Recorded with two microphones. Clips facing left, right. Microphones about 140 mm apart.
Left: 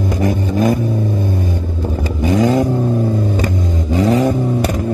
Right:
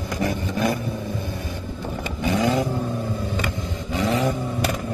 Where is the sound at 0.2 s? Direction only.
45° left (ahead or behind).